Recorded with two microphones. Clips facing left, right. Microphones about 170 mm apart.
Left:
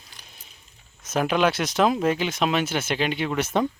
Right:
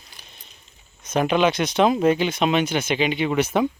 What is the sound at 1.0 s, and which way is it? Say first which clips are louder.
Speech: right 2 dB; 5° left (ahead or behind).